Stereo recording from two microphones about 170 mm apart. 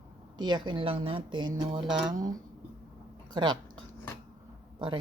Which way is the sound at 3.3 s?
25° right (ahead or behind).